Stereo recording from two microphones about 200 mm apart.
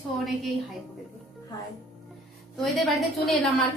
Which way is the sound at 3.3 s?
Centre (ahead or behind).